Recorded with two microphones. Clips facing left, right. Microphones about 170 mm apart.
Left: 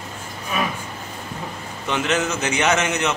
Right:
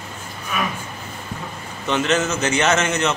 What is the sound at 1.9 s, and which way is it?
Speech, 10° left (ahead or behind).